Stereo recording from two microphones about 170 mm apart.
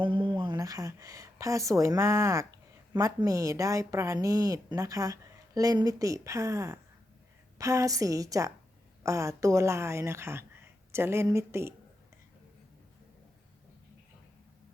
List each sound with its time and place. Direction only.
0.0 s a woman's voice: 30° right (ahead or behind)